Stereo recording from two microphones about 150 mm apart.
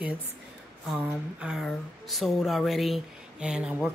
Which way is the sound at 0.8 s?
5° right (ahead or behind).